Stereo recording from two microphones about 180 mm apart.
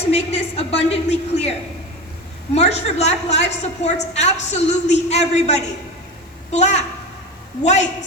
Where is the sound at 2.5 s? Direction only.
35° left (ahead or behind).